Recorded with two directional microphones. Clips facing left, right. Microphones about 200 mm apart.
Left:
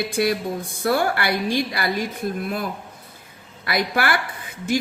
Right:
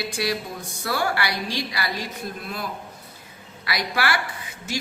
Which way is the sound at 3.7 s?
50° left (ahead or behind).